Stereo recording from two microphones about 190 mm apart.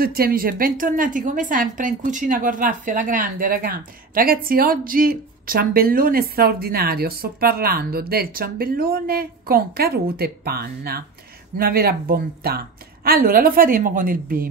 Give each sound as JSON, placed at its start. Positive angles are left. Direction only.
{"t": 0.0, "sound": "a woman's voice", "side_deg": -50}